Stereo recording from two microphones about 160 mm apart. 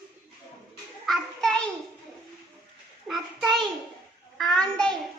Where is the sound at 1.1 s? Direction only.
5° left (ahead or behind).